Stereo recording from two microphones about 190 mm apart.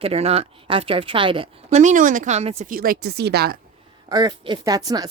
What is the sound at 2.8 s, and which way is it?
Speech, 55° right (ahead or behind).